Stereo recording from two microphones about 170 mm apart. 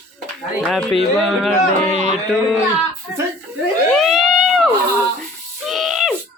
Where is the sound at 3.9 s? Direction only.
Centre (ahead or behind).